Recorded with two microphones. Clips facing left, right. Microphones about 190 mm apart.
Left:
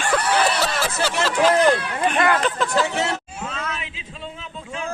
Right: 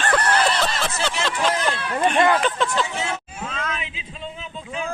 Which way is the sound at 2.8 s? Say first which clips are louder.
Left 4 dB; 70° left (ahead or behind).